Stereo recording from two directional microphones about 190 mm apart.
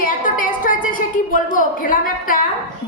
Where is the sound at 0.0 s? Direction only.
45° left (ahead or behind).